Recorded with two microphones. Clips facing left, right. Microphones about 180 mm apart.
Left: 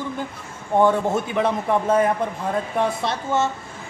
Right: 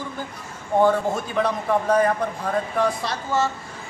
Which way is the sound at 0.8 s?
25° left (ahead or behind).